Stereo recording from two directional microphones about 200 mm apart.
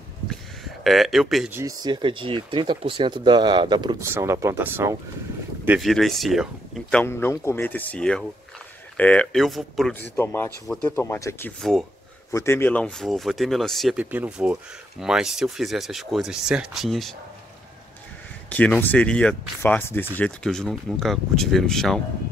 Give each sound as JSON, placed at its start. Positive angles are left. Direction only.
{"t": 0.8, "sound": "speech", "side_deg": 0}
{"t": 1.6, "sound": "speech", "side_deg": -20}
{"t": 5.7, "sound": "speech", "side_deg": 0}
{"t": 10.1, "sound": "speech", "side_deg": 10}
{"t": 18.5, "sound": "speech", "side_deg": 5}